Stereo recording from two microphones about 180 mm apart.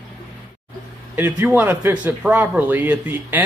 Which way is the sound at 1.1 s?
10° right (ahead or behind).